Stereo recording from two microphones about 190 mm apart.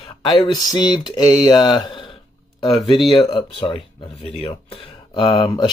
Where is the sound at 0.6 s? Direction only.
20° left (ahead or behind).